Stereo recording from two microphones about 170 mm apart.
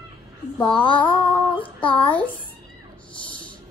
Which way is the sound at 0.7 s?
30° left (ahead or behind).